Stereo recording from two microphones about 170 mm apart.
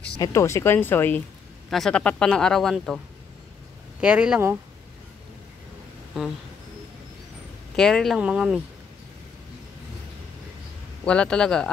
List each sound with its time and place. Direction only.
0.2 s speech: 15° left (ahead or behind)
4.0 s speech: 5° right (ahead or behind)
7.7 s speech: 5° left (ahead or behind)
11.1 s speech: 5° left (ahead or behind)